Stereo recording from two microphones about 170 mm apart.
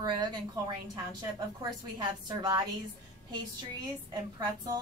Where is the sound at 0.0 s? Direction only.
25° right (ahead or behind).